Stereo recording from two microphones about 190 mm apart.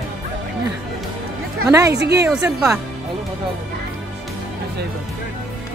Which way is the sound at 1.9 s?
60° right (ahead or behind).